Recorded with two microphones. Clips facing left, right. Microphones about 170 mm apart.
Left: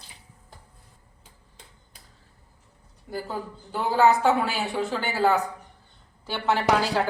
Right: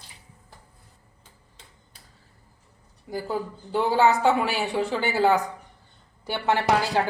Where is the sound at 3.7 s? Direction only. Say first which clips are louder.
Even; 20° right (ahead or behind).